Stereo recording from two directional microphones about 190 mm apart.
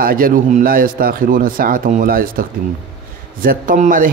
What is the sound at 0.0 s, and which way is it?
A man's voice, 50° right (ahead or behind).